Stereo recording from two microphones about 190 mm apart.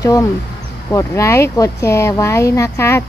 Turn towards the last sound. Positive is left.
turn(degrees=15)  # may be behind; listen again after turning